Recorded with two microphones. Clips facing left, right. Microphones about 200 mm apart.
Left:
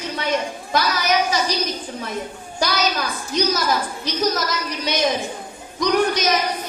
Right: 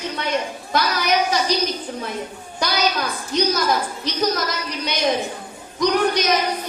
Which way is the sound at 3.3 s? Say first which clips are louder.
Right 1 dB; 60° right (ahead or behind).